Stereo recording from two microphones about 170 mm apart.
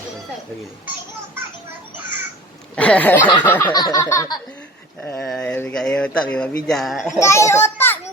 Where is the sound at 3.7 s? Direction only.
20° left (ahead or behind).